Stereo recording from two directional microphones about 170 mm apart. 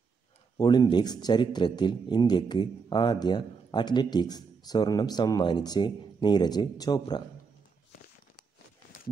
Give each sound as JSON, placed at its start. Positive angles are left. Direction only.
{"t": 0.6, "sound": "a man's voice", "side_deg": 25}